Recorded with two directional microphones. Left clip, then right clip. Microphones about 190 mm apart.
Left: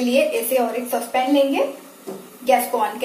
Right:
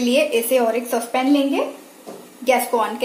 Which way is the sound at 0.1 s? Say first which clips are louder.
Right 2 dB; 55° right (ahead or behind).